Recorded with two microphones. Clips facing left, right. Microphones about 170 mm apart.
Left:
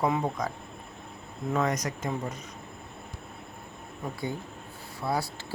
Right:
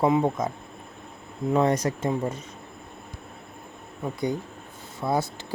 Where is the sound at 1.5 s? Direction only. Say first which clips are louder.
Right 6 dB; 30° right (ahead or behind).